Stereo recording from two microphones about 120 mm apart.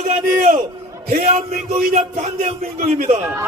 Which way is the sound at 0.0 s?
80° right.